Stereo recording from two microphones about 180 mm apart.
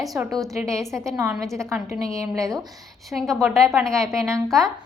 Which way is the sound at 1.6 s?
15° right (ahead or behind).